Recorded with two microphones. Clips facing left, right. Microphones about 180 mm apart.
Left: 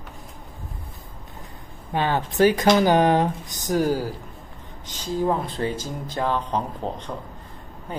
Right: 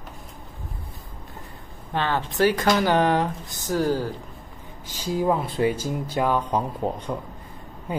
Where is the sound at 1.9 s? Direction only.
15° left (ahead or behind).